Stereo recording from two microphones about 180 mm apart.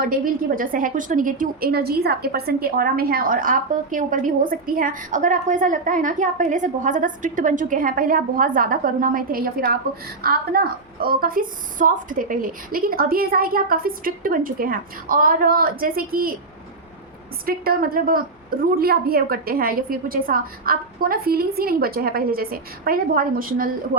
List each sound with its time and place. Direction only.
0.0 s a woman's voice: 50° right (ahead or behind)
17.4 s a woman's voice: 55° right (ahead or behind)